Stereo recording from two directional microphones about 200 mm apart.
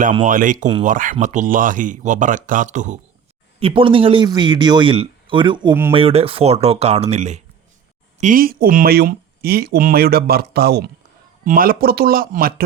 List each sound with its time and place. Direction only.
0.1 s speech: 40° right (ahead or behind)
3.6 s speech: 25° right (ahead or behind); by 12.6 s 45° right (ahead or behind)